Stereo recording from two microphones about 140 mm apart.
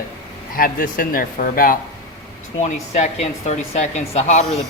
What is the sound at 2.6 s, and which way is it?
Speech, 60° left (ahead or behind).